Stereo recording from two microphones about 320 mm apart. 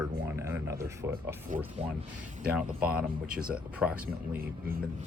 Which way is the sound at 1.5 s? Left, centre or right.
Right.